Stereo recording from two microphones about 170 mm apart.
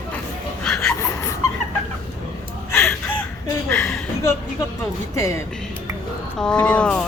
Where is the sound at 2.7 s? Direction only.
15° left (ahead or behind).